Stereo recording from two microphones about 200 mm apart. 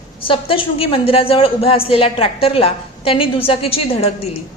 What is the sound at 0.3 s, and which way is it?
A woman's voice, 25° left (ahead or behind).